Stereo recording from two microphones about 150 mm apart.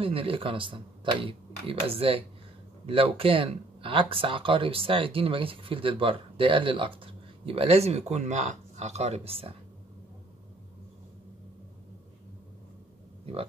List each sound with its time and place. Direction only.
0.0 s speech: 40° right (ahead or behind)
13.2 s speech: 40° right (ahead or behind)